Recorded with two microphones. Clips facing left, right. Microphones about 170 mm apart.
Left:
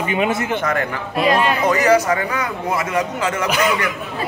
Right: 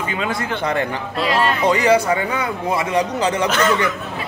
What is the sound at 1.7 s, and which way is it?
A man's voice, 30° right (ahead or behind).